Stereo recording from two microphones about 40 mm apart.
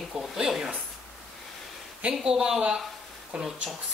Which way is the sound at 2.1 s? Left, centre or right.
Centre.